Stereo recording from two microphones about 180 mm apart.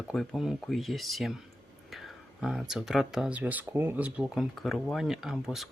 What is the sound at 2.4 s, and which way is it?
Speech, 5° right (ahead or behind).